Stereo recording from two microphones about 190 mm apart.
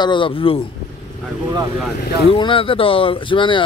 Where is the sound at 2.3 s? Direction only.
25° left (ahead or behind).